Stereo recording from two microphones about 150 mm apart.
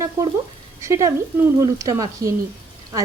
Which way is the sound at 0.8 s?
20° right (ahead or behind).